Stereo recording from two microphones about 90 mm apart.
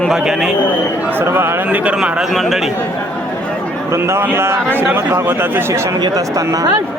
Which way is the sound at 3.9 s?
30° right (ahead or behind).